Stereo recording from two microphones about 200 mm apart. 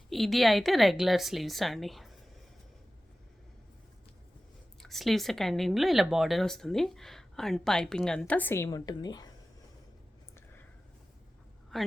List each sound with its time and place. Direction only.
0.1 s speech: centre (ahead or behind)
4.8 s speech: centre (ahead or behind); by 9.3 s 20° left (ahead or behind)
11.7 s speech: centre (ahead or behind)